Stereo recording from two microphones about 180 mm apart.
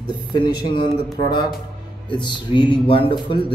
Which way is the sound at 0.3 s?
25° left (ahead or behind).